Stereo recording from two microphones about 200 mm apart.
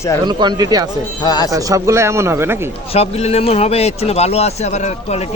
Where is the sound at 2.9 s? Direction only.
30° left (ahead or behind).